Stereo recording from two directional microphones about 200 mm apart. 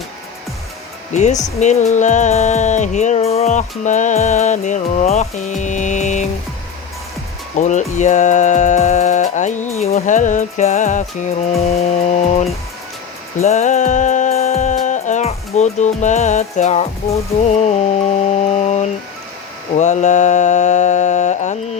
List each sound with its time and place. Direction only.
1.1 s music: 35° left (ahead or behind)
7.5 s music: 40° left (ahead or behind)
19.7 s mantra: 35° left (ahead or behind)